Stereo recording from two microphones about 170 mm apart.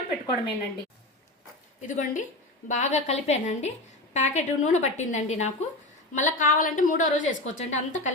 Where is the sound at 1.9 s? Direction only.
50° left (ahead or behind).